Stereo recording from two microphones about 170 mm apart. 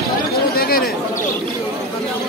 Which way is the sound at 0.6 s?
60° left (ahead or behind).